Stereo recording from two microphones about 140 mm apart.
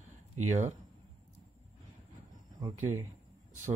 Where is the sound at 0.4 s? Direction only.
55° right (ahead or behind).